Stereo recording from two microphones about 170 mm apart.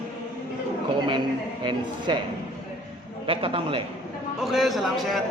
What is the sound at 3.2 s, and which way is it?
Speech, 30° right (ahead or behind).